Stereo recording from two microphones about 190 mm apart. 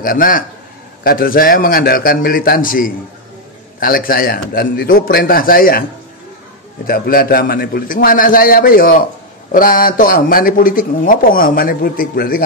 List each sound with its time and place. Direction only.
0.0 s a man's voice: 45° left (ahead or behind)
6.9 s a man's voice: 50° left (ahead or behind)